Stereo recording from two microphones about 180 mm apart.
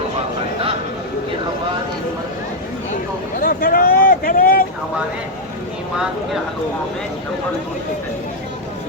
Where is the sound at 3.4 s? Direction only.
50° left (ahead or behind).